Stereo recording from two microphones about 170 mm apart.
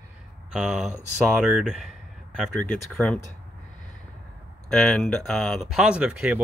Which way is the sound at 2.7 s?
10° left (ahead or behind).